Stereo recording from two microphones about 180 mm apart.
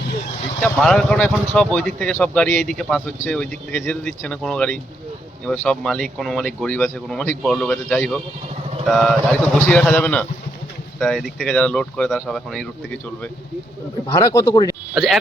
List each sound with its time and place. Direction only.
0.6 s a man's voice: 5° left (ahead or behind)
14.1 s speech: 20° left (ahead or behind)
14.9 s speech: centre (ahead or behind)